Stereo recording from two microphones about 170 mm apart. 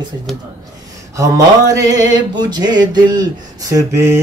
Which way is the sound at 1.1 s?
20° right (ahead or behind).